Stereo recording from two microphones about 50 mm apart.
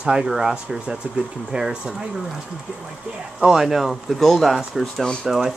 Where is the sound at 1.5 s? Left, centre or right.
Centre.